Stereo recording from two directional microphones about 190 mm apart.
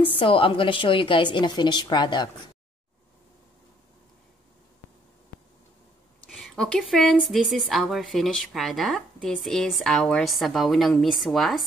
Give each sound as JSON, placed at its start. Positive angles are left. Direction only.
{"t": 0.0, "sound": "a woman's voice", "side_deg": 25}
{"t": 6.2, "sound": "a woman's voice", "side_deg": 5}